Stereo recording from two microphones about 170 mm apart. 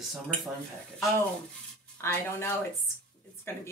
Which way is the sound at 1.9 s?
15° left (ahead or behind).